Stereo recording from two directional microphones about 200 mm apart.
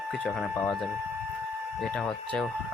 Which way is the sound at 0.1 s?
Centre (ahead or behind).